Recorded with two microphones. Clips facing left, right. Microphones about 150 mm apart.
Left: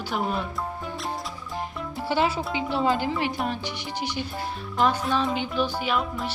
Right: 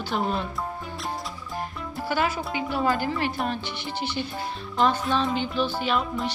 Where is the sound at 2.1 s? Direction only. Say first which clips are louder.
Left 2 dB; 25° left (ahead or behind).